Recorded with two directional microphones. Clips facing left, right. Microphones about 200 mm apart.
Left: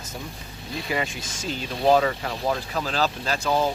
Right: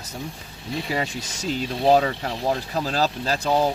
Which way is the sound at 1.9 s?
30° right (ahead or behind).